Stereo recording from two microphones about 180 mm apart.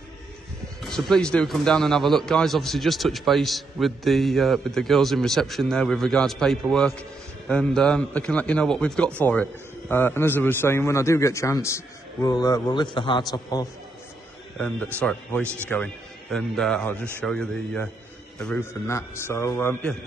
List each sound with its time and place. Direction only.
0.8 s a man's voice: centre (ahead or behind); by 13.7 s 20° left (ahead or behind)
15.0 s a man's voice: 5° left (ahead or behind)
15.4 s a man's voice: 15° right (ahead or behind)
15.7 s a man's voice: 5° left (ahead or behind)